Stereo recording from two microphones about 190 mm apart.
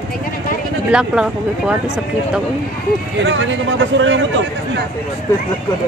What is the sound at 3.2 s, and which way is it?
Speech, 75° right (ahead or behind).